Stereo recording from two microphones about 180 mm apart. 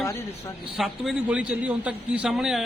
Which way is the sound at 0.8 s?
5° right (ahead or behind).